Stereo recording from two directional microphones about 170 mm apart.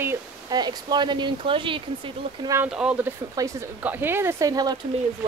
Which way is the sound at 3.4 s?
15° right (ahead or behind).